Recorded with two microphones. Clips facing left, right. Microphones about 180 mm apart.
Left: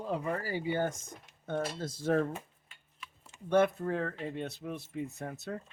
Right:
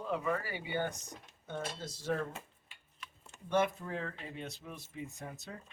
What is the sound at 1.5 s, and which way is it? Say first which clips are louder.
Speech: left 6 dB; 55° left (ahead or behind).